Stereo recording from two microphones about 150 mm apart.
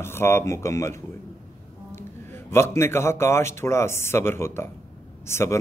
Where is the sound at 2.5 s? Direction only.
15° left (ahead or behind).